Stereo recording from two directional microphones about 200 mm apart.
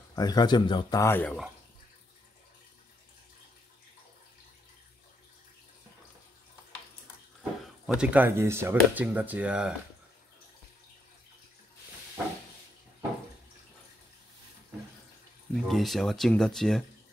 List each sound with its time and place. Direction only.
0.1 s a man's voice: 20° left (ahead or behind)
7.8 s speech: 5° right (ahead or behind)
15.5 s speech: centre (ahead or behind)